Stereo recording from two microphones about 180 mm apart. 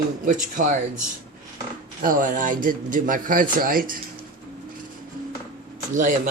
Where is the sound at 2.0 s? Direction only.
50° right (ahead or behind).